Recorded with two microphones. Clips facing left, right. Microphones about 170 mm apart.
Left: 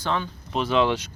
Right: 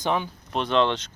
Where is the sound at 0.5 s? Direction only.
5° left (ahead or behind).